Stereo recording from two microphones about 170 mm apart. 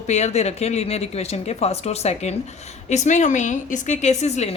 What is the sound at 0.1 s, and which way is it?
Speech, 40° left (ahead or behind).